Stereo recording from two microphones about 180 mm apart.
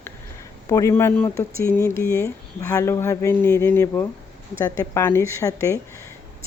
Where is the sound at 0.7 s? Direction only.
15° left (ahead or behind).